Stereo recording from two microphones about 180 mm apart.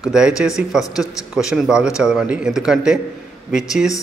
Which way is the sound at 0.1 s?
5° right (ahead or behind).